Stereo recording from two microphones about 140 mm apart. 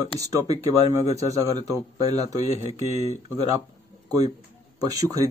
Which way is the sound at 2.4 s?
50° left (ahead or behind).